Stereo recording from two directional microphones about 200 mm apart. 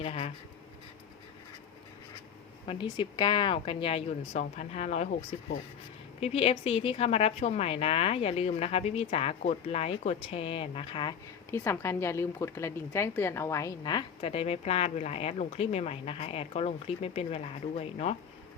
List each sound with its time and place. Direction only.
0.0 s writing: 30° left (ahead or behind)
2.6 s a woman's voice: 25° left (ahead or behind)
6.1 s a woman's voice: 30° left (ahead or behind)
11.5 s a woman's voice: 15° left (ahead or behind); by 18.2 s 30° left (ahead or behind)